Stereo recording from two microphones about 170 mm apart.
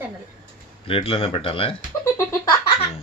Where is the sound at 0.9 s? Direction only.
35° left (ahead or behind).